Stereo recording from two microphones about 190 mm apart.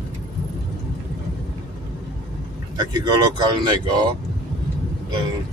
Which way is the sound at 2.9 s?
20° right (ahead or behind).